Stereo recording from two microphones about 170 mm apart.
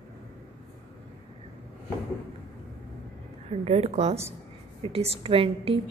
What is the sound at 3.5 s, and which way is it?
A woman's voice, 40° right (ahead or behind).